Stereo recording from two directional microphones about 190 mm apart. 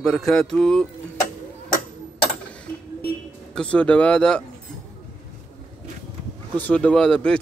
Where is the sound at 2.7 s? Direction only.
10° left (ahead or behind).